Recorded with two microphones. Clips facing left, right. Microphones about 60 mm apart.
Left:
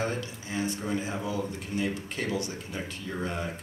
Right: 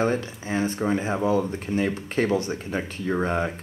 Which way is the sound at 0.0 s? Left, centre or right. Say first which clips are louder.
Right 7 dB; right.